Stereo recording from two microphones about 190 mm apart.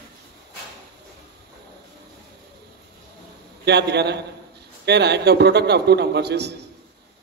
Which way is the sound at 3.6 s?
60° right (ahead or behind).